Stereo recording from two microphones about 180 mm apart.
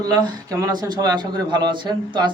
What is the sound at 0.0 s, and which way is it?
A man's voice, 20° right (ahead or behind).